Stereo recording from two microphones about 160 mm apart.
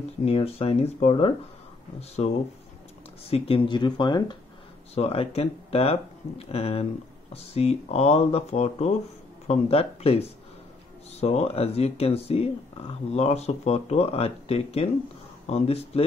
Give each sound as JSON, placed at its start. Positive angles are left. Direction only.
{"t": 0.2, "sound": "speech", "side_deg": 35}